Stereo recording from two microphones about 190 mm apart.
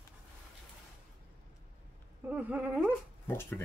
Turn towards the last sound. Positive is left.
turn(degrees=10)  # may be behind; listen again after turning